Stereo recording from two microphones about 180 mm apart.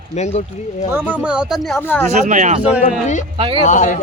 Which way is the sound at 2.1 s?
45° right (ahead or behind).